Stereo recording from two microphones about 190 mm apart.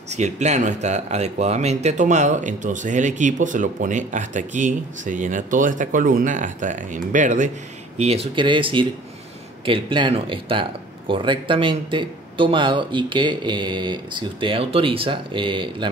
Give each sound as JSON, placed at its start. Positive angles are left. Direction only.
{"t": 0.1, "sound": "speech", "side_deg": -35}